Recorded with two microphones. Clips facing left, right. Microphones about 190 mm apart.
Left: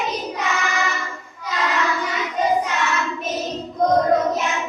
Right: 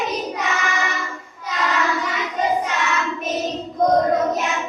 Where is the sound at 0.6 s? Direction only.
20° right (ahead or behind).